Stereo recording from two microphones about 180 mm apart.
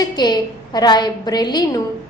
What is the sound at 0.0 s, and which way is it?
A woman's voice, 25° left (ahead or behind).